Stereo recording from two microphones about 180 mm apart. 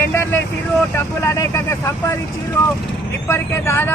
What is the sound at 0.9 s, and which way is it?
Speech, 15° left (ahead or behind).